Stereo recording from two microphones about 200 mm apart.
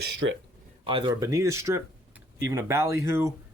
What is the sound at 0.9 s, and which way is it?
Speech, 20° right (ahead or behind).